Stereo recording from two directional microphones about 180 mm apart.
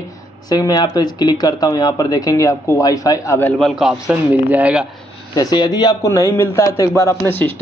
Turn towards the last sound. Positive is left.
turn(degrees=10)  # may be behind; listen again after turning